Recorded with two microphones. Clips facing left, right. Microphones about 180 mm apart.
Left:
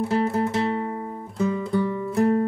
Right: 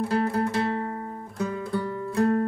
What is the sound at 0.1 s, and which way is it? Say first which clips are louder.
Music: left 2 dB; 20° left (ahead or behind).